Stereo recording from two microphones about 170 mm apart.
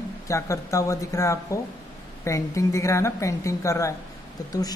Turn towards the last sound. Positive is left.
turn(degrees=20)  # may be behind; listen again after turning